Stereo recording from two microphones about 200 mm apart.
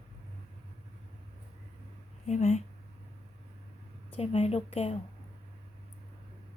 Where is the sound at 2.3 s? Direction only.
35° left (ahead or behind).